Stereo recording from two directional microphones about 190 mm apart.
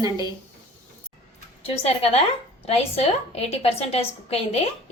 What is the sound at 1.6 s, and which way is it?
A woman's voice, 30° left (ahead or behind).